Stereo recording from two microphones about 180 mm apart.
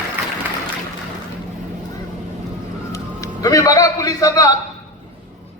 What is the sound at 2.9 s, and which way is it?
A man's voice, 15° left (ahead or behind).